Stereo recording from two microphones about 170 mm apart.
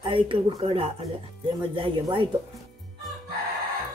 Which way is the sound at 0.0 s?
30° right (ahead or behind).